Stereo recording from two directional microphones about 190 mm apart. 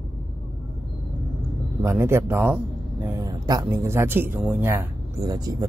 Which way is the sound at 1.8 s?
15° right (ahead or behind).